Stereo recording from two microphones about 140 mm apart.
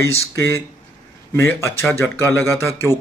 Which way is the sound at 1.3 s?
15° left (ahead or behind).